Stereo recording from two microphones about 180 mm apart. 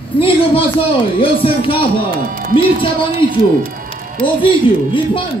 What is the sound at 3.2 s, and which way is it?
Speech, 25° left (ahead or behind).